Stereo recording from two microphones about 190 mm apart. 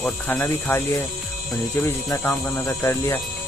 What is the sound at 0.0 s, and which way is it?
Speech, 5° left (ahead or behind).